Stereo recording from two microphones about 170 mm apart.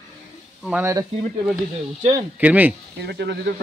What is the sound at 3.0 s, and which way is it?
Speech, 80° right.